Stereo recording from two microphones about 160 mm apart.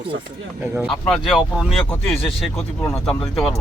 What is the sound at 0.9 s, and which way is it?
Speech, centre (ahead or behind).